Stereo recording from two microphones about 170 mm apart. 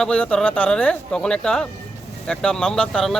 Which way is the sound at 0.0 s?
5° left (ahead or behind).